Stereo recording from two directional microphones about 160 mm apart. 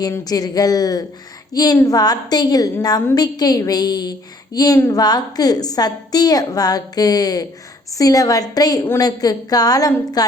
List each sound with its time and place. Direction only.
0.0 s a woman's voice: 25° left (ahead or behind)